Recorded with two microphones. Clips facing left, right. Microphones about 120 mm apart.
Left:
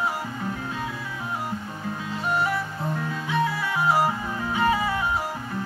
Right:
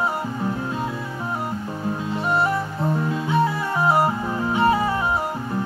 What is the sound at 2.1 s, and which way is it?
Music, 35° right (ahead or behind).